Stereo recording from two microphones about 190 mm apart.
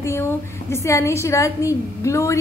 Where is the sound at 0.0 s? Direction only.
15° left (ahead or behind).